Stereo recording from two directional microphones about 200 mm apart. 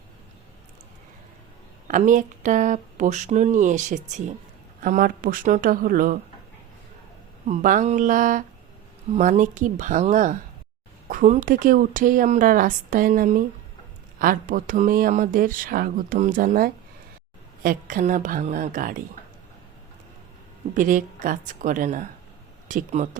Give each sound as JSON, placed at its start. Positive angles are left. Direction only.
{"t": 1.9, "sound": "speech", "side_deg": -40}
{"t": 7.4, "sound": "speech", "side_deg": -40}
{"t": 20.7, "sound": "speech", "side_deg": -40}